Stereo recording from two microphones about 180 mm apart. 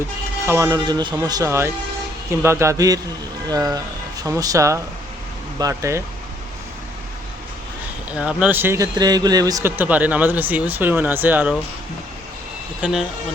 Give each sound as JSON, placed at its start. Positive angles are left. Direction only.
{"t": 0.4, "sound": "speech", "side_deg": -15}
{"t": 8.2, "sound": "speech", "side_deg": -5}
{"t": 12.8, "sound": "speech", "side_deg": 0}